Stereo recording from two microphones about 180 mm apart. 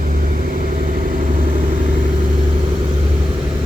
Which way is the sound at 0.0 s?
50° right (ahead or behind).